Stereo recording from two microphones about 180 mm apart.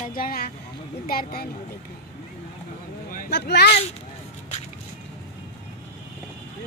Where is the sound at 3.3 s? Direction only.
70° left (ahead or behind).